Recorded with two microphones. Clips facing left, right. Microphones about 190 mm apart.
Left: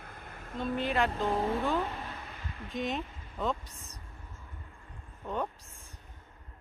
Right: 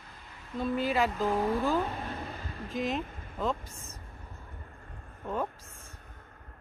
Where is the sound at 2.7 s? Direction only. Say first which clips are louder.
Right 2 dB; centre (ahead or behind).